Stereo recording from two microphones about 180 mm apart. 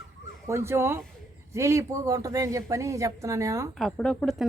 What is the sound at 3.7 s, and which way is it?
Speech, 5° left (ahead or behind).